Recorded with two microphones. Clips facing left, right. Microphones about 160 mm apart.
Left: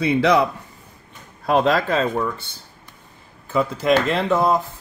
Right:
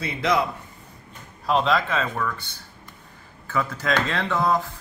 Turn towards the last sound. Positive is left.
turn(degrees=20)  # may be behind; listen again after turning